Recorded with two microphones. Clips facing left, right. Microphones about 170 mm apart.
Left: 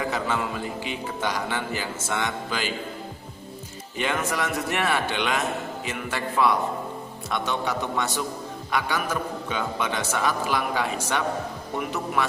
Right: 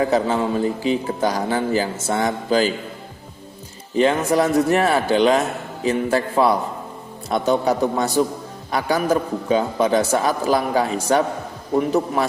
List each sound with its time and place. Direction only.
0.0 s speech: 35° right (ahead or behind)
3.9 s speech: 35° right (ahead or behind)